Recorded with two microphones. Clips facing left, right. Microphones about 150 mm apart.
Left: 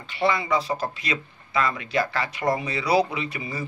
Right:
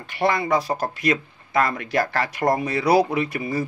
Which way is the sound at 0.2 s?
50° right (ahead or behind).